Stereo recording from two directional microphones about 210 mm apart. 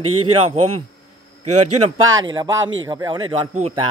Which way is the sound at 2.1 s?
20° right (ahead or behind).